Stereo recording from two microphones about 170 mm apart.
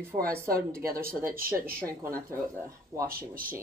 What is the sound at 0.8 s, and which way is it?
Speech, 60° right (ahead or behind).